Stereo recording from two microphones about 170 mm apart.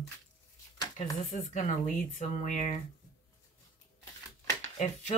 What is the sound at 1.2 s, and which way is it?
Speech, 45° left (ahead or behind).